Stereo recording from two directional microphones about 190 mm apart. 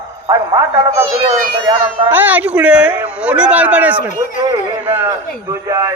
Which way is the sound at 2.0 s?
10° right (ahead or behind).